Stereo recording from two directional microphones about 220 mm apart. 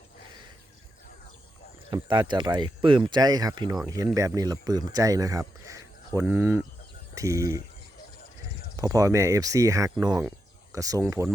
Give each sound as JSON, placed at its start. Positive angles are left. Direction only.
{"t": 1.9, "sound": "speech", "side_deg": -20}
{"t": 8.7, "sound": "speech", "side_deg": -15}